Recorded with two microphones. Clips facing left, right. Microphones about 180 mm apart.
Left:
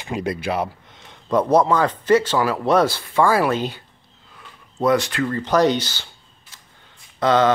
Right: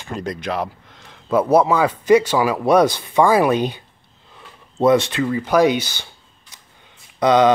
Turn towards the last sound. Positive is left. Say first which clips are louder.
# right 3 dB
turn(degrees=-15)  # may be behind; listen again after turning